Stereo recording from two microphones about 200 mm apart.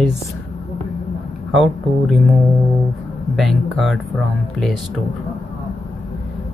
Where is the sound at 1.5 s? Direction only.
Centre (ahead or behind).